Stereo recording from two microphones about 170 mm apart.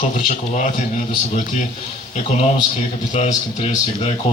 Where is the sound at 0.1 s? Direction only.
45° left (ahead or behind).